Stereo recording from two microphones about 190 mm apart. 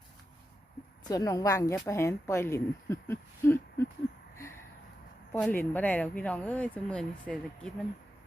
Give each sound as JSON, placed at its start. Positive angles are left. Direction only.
{"t": 1.1, "sound": "speech", "side_deg": 20}
{"t": 4.4, "sound": "a sound", "side_deg": 15}
{"t": 5.3, "sound": "speech", "side_deg": 10}